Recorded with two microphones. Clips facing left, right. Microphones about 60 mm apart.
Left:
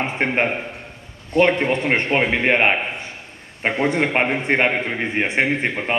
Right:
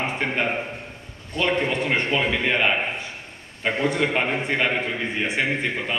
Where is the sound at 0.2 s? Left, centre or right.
Left.